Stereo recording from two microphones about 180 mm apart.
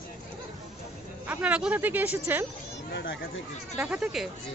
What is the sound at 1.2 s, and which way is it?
Speech, 10° right (ahead or behind).